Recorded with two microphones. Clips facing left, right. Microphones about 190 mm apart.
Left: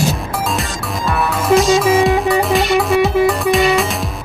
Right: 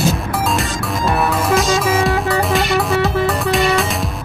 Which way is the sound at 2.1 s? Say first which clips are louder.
Left 3 dB; 15° left (ahead or behind).